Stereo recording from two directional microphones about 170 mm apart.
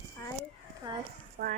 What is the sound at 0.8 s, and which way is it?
Speech, 25° right (ahead or behind).